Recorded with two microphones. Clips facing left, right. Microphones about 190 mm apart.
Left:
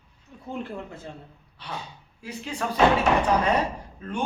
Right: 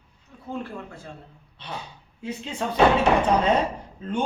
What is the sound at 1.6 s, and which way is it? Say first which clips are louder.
A man's voice: even; 25° right (ahead or behind).